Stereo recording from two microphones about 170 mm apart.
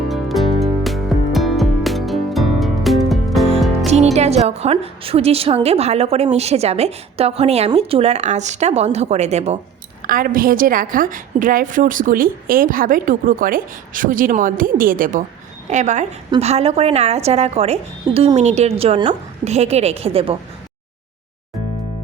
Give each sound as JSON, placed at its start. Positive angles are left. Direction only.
{"t": 0.1, "sound": "music", "side_deg": 0}
{"t": 3.8, "sound": "music", "side_deg": -40}
{"t": 4.4, "sound": "a woman's voice", "side_deg": -40}
{"t": 10.1, "sound": "a woman's voice", "side_deg": -55}